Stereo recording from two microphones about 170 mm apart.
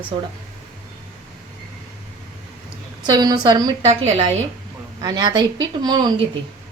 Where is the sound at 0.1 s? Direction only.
35° right (ahead or behind).